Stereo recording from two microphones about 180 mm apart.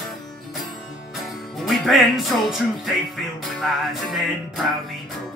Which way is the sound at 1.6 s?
Centre (ahead or behind).